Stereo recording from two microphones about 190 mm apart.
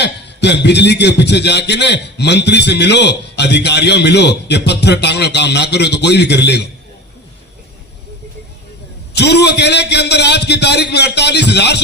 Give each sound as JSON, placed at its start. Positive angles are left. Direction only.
{"t": 0.0, "sound": "a man's voice", "side_deg": 65}
{"t": 9.1, "sound": "a man's voice", "side_deg": 60}